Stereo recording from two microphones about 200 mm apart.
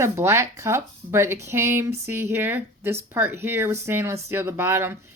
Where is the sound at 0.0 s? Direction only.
15° right (ahead or behind).